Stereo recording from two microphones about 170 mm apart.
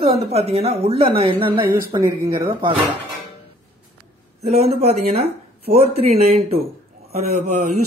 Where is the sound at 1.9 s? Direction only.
20° right (ahead or behind).